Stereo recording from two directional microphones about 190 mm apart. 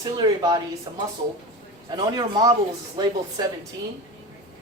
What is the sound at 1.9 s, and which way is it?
Speech, 20° right (ahead or behind).